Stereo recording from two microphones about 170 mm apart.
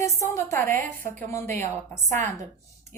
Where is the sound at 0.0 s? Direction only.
15° left (ahead or behind).